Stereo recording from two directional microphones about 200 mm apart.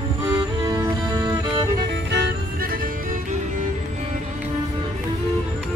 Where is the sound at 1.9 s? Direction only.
60° right (ahead or behind); by 3.2 s 45° right (ahead or behind).